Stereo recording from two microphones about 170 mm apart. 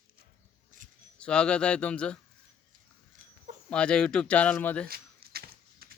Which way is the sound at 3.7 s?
5° left (ahead or behind).